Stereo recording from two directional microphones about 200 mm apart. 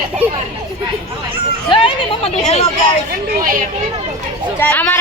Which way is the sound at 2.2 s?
35° left (ahead or behind).